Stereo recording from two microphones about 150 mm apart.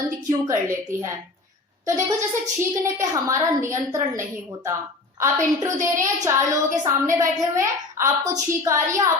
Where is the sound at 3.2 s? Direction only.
20° right (ahead or behind).